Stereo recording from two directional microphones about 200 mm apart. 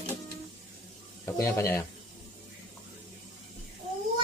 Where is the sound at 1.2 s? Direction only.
15° left (ahead or behind).